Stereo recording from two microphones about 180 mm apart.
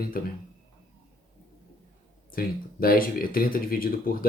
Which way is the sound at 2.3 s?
55° left (ahead or behind).